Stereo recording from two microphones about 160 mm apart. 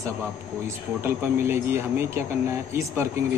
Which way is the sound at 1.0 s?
15° right (ahead or behind).